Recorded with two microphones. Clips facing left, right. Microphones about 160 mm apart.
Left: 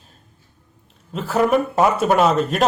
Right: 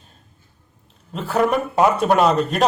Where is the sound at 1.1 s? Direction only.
Centre (ahead or behind).